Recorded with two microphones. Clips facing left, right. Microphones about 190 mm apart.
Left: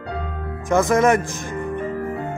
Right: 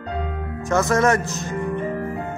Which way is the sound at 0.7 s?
15° left (ahead or behind).